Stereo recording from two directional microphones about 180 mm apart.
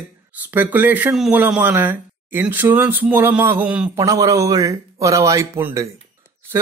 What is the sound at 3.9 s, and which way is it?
Speech, 20° right (ahead or behind).